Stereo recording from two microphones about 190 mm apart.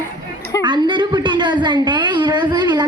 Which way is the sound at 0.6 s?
25° right (ahead or behind).